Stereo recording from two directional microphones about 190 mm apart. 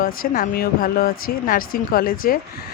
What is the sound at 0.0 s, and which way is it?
A woman's voice, 50° left (ahead or behind).